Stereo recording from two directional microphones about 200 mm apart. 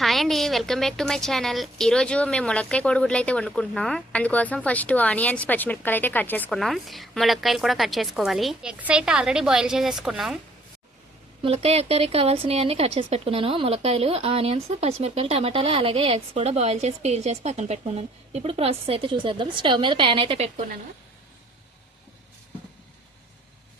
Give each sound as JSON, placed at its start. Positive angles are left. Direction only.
{"t": 0.0, "sound": "a woman's voice", "side_deg": 0}
{"t": 11.4, "sound": "speech", "side_deg": -30}